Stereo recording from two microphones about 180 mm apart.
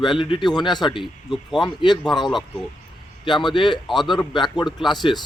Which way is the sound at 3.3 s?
25° left (ahead or behind).